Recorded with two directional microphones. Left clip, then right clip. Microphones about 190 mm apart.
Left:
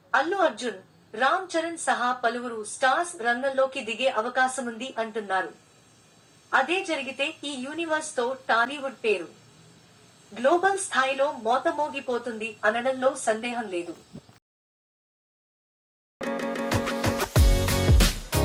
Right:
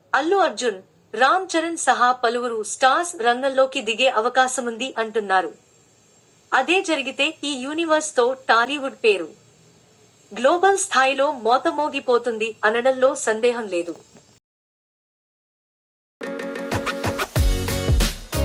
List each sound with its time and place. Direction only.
0.1 s speech: 30° right (ahead or behind)
6.5 s speech: 30° right (ahead or behind)
10.3 s speech: 35° right (ahead or behind)
16.6 s music: centre (ahead or behind)